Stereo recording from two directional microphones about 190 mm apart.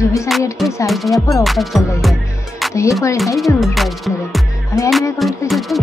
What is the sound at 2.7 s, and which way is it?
Music, 15° left (ahead or behind).